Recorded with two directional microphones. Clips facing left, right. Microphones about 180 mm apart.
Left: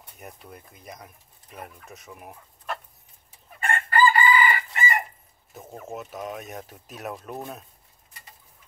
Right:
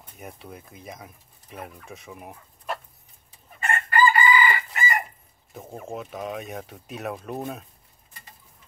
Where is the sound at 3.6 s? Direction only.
30° left (ahead or behind).